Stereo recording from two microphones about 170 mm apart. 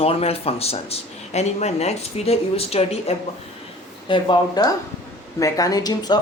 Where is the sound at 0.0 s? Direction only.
35° left (ahead or behind).